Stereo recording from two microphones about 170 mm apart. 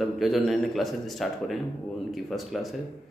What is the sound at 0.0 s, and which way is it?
A man's voice, centre (ahead or behind).